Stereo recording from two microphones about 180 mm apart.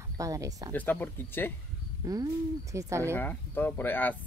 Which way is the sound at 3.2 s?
10° left (ahead or behind).